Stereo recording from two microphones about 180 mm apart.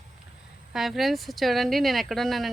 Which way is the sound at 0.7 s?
Centre (ahead or behind).